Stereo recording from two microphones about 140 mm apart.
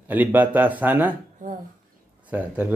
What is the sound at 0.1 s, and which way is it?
Speech, 10° right (ahead or behind).